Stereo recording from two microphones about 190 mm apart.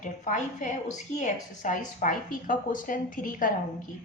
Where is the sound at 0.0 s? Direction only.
40° left (ahead or behind).